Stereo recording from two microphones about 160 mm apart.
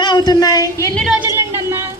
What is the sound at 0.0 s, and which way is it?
Speech, 25° left (ahead or behind).